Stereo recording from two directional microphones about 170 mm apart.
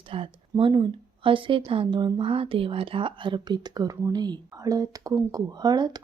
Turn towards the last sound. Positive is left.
turn(degrees=-25)  # may be behind; listen again after turning